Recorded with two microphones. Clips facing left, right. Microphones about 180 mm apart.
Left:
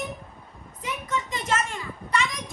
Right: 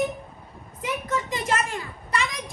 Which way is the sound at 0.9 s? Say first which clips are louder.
Right 3 dB; centre (ahead or behind).